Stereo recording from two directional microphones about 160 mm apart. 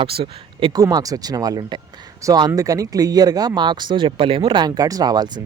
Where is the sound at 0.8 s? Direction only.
20° right (ahead or behind).